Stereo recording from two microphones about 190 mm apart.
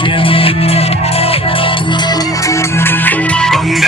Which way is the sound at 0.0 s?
25° left (ahead or behind).